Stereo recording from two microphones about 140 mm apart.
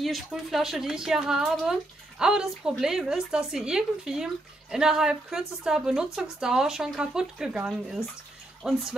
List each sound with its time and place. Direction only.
0.0 s speech: centre (ahead or behind)